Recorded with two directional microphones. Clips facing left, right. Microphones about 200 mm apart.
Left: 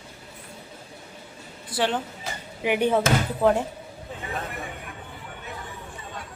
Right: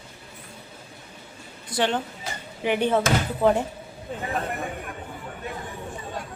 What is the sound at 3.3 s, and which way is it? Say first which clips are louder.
Speech: right 1 dB; 5° right (ahead or behind).